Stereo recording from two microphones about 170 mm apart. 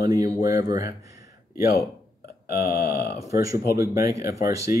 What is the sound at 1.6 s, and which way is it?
Speech, 65° left (ahead or behind).